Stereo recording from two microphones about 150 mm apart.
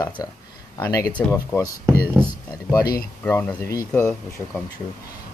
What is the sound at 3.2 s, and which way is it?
Speech, 10° left (ahead or behind).